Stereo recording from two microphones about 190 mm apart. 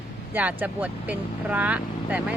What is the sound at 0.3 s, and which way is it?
Speech, 10° right (ahead or behind).